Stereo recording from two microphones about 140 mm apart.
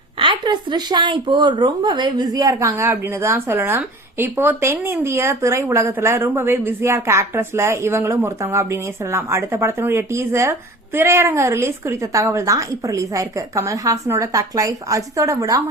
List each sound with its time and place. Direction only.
0.2 s a woman's voice: 35° right (ahead or behind)